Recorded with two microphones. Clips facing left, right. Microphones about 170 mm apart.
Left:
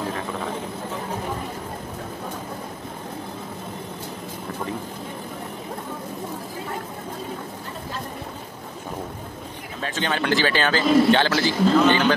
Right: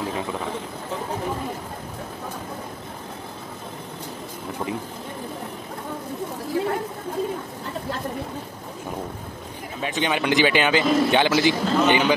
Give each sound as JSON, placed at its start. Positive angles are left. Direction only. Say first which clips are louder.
{"t": 9.8, "sound": "speech", "louder": "right 2 dB", "side_deg": -15}